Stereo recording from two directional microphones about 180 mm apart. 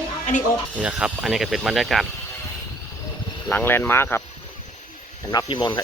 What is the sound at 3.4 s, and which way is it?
Speech, 10° left (ahead or behind).